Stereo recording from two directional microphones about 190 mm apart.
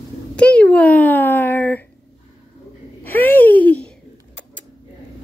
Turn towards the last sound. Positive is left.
turn(degrees=10)  # may be behind; listen again after turning